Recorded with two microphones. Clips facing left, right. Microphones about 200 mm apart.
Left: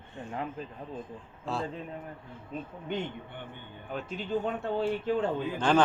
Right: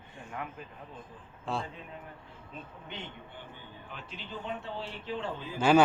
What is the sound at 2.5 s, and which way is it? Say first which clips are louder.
Speech: left 8 dB; 45° left (ahead or behind).